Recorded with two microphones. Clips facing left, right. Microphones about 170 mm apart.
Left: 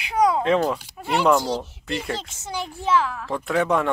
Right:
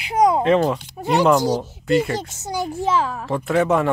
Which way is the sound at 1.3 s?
15° right (ahead or behind).